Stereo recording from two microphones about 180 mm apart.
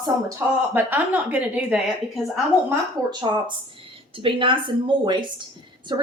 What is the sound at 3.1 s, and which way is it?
A woman's voice, 25° right (ahead or behind).